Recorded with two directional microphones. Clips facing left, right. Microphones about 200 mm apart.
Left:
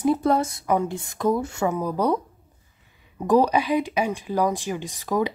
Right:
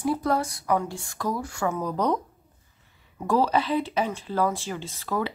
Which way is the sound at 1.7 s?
10° left (ahead or behind).